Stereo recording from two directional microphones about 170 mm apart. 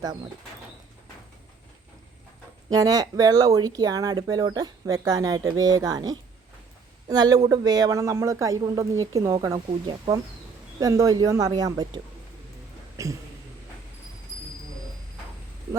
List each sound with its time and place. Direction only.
2.6 s speech: 20° right (ahead or behind)
13.0 s speech: 20° right (ahead or behind)